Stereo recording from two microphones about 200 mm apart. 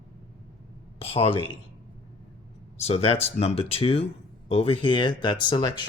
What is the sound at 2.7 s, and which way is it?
Speech, 30° left (ahead or behind).